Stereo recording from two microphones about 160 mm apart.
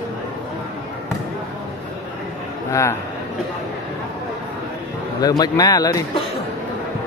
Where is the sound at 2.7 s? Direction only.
20° left (ahead or behind).